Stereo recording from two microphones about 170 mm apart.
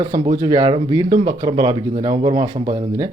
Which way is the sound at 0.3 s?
25° right (ahead or behind).